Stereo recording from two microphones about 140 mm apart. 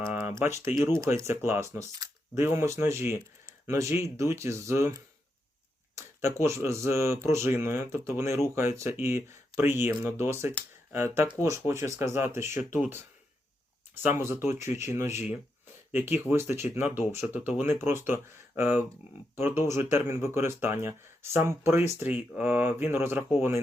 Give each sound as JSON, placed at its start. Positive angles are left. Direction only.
{"t": 0.0, "sound": "speech", "side_deg": -15}
{"t": 6.4, "sound": "speech", "side_deg": -20}